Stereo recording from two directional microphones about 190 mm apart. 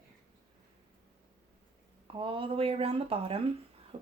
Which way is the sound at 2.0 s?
30° right (ahead or behind).